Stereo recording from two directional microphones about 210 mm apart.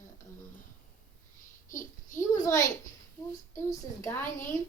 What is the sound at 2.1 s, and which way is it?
A woman's voice, 15° left (ahead or behind).